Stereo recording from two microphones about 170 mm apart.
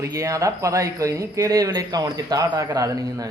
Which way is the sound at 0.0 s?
20° right (ahead or behind).